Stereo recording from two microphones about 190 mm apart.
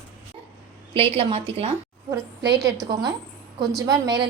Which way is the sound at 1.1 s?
30° right (ahead or behind).